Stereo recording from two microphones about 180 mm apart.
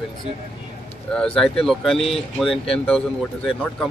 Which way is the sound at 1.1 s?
5° left (ahead or behind).